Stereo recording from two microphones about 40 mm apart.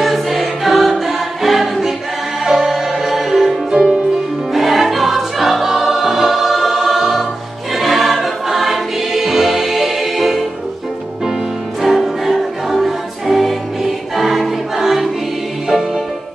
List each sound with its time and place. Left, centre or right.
0.0 s choir: centre
2.4 s music: centre
3.8 s music: right
4.6 s choir: centre
11.8 s music: centre
14.8 s choir: centre